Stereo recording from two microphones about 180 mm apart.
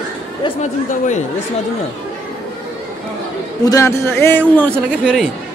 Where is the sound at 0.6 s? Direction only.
40° left (ahead or behind).